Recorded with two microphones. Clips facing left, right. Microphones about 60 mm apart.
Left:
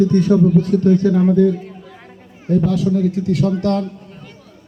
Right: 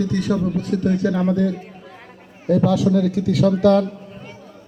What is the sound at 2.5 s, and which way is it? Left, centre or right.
Speech, right.